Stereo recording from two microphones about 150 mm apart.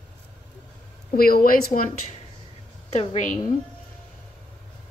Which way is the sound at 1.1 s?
80° left.